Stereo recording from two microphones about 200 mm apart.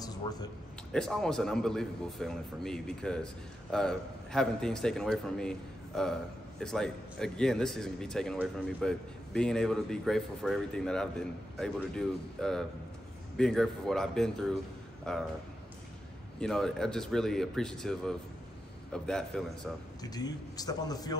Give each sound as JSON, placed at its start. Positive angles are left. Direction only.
{"t": 0.0, "sound": "a sound", "side_deg": 20}
{"t": 0.9, "sound": "a man's voice", "side_deg": 5}
{"t": 16.3, "sound": "a man's voice", "side_deg": 5}
{"t": 20.0, "sound": "a man's voice", "side_deg": 20}